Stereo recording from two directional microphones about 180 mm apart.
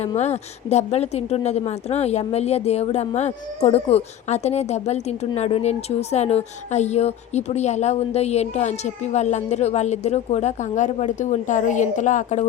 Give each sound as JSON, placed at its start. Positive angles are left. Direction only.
{"t": 0.2, "sound": "a woman's voice", "side_deg": 40}